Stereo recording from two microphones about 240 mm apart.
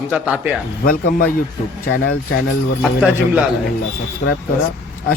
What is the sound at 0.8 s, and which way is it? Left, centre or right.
Speech, left.